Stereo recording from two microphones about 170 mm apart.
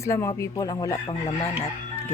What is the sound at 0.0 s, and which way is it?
Speech, 15° left (ahead or behind).